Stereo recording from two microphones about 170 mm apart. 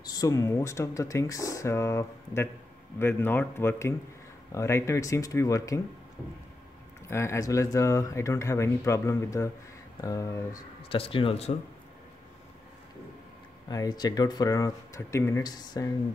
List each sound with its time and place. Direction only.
0.0 s speech: 20° left (ahead or behind)
7.1 s speech: 15° left (ahead or behind)
10.9 s speech: 30° left (ahead or behind)
13.7 s speech: 25° left (ahead or behind)